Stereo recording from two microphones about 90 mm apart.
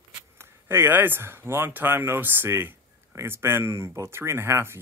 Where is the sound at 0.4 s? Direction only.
30° right (ahead or behind).